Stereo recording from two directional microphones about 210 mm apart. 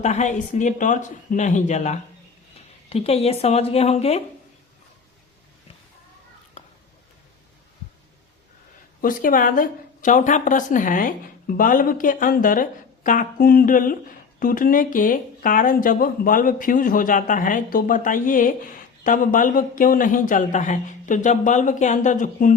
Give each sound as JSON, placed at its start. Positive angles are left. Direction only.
{"t": 0.0, "sound": "a woman's voice", "side_deg": 35}
{"t": 9.0, "sound": "speech", "side_deg": 40}